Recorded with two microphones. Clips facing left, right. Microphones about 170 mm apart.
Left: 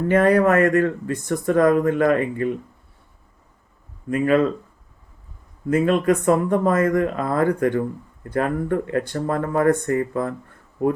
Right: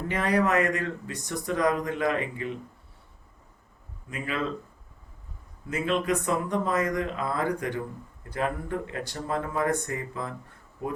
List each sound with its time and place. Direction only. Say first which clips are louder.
0.1 s speech: left 9 dB; 50° left (ahead or behind)
4.1 s speech: left 14 dB; 50° left (ahead or behind)
5.6 s speech: left 9 dB; 50° left (ahead or behind)